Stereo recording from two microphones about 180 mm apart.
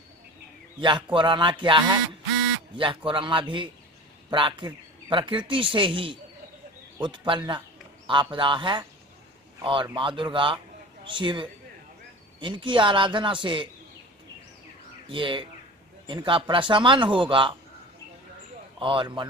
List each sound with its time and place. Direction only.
0.7 s a man's voice: 25° right (ahead or behind)
15.0 s speech: 25° right (ahead or behind)
18.8 s speech: 30° right (ahead or behind)